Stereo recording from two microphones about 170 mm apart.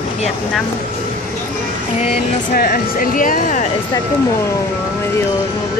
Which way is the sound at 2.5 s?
55° left (ahead or behind).